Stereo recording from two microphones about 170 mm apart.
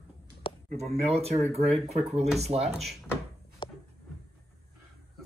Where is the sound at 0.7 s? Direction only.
40° right (ahead or behind).